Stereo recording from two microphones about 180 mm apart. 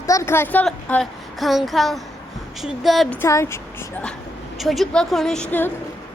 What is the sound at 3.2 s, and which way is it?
Speech, 15° left (ahead or behind).